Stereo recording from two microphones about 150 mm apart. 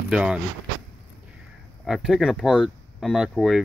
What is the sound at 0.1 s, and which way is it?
Speech, 5° right (ahead or behind).